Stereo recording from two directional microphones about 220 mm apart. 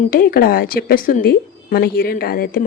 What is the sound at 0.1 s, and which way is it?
A woman's voice, 40° left (ahead or behind).